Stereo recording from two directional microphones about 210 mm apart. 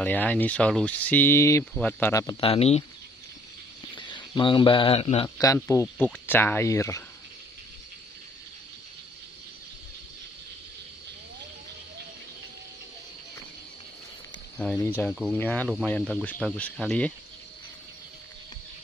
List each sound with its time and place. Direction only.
0.0 s speech: 10° left (ahead or behind)
2.4 s speech: 30° left (ahead or behind)
3.9 s speech: 20° left (ahead or behind)
14.6 s speech: 5° left (ahead or behind)